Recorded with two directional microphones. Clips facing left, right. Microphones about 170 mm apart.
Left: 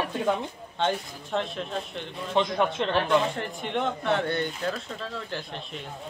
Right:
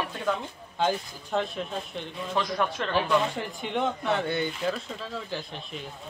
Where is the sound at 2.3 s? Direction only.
25° left (ahead or behind).